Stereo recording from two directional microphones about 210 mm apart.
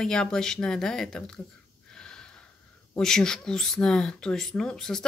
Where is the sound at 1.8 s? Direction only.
5° left (ahead or behind).